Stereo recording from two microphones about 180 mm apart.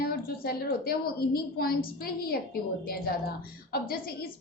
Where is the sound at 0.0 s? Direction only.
60° left (ahead or behind).